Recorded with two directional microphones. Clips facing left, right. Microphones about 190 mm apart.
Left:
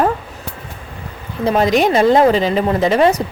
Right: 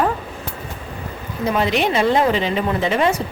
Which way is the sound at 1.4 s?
40° left (ahead or behind).